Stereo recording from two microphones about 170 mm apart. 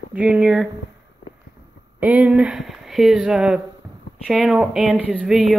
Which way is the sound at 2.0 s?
10° right (ahead or behind).